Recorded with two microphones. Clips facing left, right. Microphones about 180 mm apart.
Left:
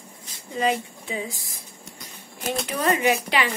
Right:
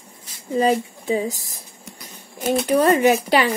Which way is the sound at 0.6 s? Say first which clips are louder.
Right 5 dB; 40° right (ahead or behind).